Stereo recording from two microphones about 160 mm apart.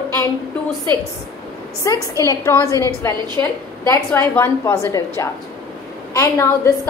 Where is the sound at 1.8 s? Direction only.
20° left (ahead or behind).